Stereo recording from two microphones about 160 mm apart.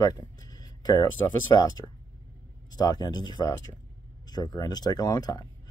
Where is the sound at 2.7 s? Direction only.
25° left (ahead or behind).